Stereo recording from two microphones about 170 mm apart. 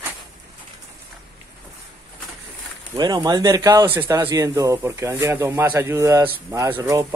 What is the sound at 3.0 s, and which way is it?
Speech, 25° right (ahead or behind).